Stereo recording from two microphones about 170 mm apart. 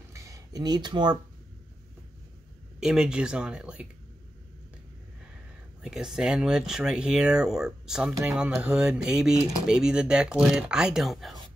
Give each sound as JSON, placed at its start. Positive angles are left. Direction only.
{"t": 0.1, "sound": "a sound", "side_deg": -20}
{"t": 2.8, "sound": "speech", "side_deg": -5}
{"t": 5.8, "sound": "speech", "side_deg": -5}